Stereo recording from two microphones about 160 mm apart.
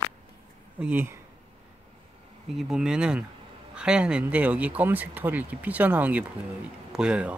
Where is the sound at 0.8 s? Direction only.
15° right (ahead or behind).